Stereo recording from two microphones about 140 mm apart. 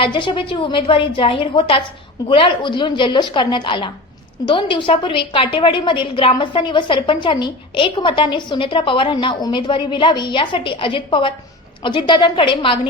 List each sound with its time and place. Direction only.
0.0 s a woman's voice: 35° left (ahead or behind)